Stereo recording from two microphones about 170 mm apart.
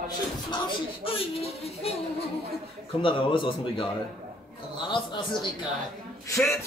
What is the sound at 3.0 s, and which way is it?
Speech, 30° left (ahead or behind).